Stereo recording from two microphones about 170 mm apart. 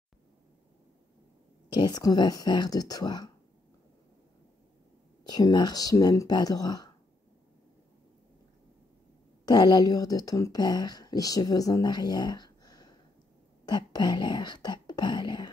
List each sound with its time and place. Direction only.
1.7 s speech: 25° left (ahead or behind)
5.2 s speech: 25° left (ahead or behind)
9.5 s speech: 25° left (ahead or behind)